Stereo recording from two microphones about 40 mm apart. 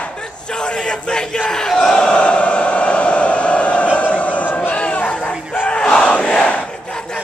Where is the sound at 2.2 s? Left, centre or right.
Left.